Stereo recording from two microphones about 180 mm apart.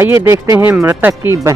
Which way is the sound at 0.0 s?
15° right (ahead or behind).